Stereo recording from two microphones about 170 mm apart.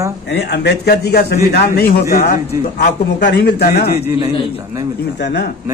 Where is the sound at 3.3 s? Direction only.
80° left.